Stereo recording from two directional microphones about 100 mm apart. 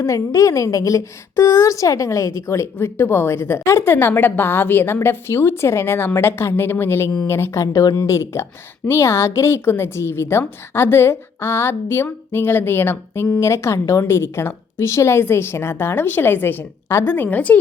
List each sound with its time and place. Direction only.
0.0 s a woman's voice: 30° left (ahead or behind); by 17.6 s 15° left (ahead or behind)